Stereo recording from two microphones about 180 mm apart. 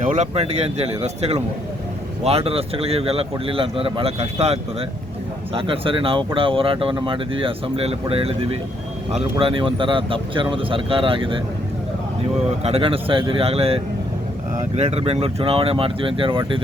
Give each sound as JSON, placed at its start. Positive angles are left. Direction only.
{"t": 0.0, "sound": "speech", "side_deg": -40}
{"t": 12.6, "sound": "speech", "side_deg": -30}